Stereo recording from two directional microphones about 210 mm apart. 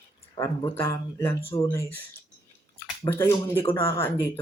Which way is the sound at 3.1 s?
10° left (ahead or behind).